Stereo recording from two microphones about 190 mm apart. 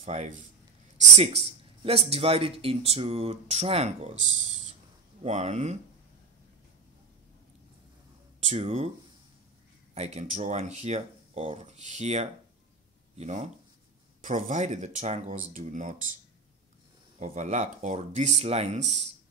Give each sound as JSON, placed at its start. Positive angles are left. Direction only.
{"t": 0.0, "sound": "speech", "side_deg": -35}
{"t": 8.5, "sound": "speech", "side_deg": -35}
{"t": 9.9, "sound": "speech", "side_deg": -35}
{"t": 17.2, "sound": "speech", "side_deg": -40}